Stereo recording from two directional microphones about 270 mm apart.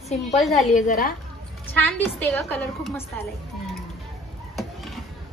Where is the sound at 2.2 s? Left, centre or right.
Centre.